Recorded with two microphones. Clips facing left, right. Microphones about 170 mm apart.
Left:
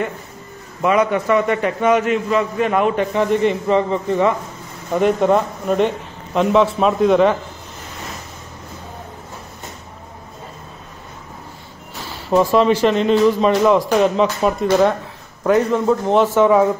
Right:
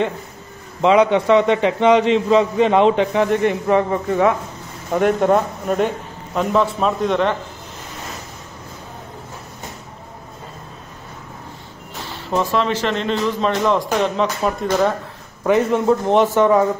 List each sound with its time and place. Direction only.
0.8 s a man's voice: 20° right (ahead or behind)
3.6 s a man's voice: 10° right (ahead or behind); by 7.3 s 5° left (ahead or behind)
12.4 s a man's voice: 10° left (ahead or behind)